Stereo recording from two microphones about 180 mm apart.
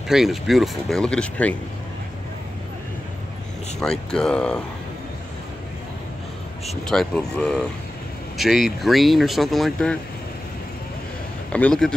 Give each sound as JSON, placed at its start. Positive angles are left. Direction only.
{"t": 0.1, "sound": "speech", "side_deg": 0}
{"t": 3.8, "sound": "speech", "side_deg": 5}
{"t": 6.7, "sound": "speech", "side_deg": 0}
{"t": 11.5, "sound": "speech", "side_deg": 5}